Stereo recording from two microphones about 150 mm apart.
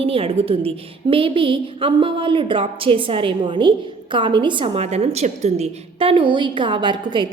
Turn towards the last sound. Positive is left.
turn(degrees=-30)  # may be behind; listen again after turning